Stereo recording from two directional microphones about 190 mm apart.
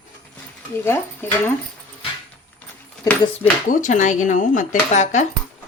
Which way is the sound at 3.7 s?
40° left (ahead or behind).